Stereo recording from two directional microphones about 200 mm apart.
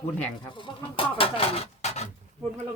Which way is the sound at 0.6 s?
25° left (ahead or behind).